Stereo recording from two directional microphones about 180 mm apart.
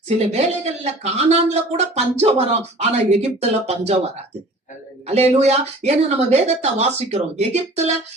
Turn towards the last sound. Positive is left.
turn(degrees=-35)  # may be behind; listen again after turning